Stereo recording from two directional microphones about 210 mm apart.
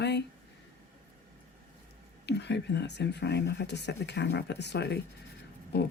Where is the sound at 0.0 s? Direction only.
55° left (ahead or behind).